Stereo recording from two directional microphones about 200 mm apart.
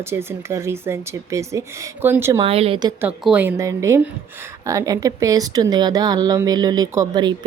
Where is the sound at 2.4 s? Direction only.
30° right (ahead or behind).